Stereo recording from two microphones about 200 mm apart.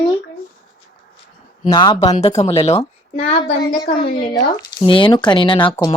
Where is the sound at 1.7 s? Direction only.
25° left (ahead or behind).